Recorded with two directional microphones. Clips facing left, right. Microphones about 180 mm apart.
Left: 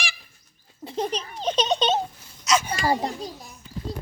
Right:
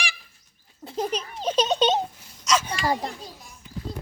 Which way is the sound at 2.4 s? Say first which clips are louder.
Left 1 dB; 10° left (ahead or behind).